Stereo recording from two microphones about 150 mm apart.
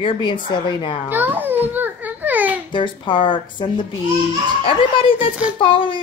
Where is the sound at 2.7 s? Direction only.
30° left (ahead or behind).